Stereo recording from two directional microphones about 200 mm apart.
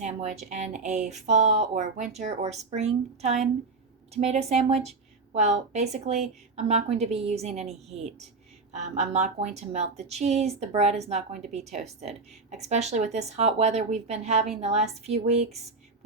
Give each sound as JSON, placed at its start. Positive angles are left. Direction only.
{"t": 0.0, "sound": "a woman's voice", "side_deg": -35}